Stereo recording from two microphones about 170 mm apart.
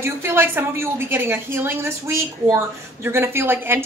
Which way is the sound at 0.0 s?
15° right (ahead or behind).